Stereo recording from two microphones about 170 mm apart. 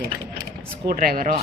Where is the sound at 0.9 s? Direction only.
55° right (ahead or behind).